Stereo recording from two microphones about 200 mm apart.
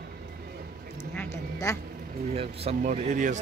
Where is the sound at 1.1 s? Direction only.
10° left (ahead or behind).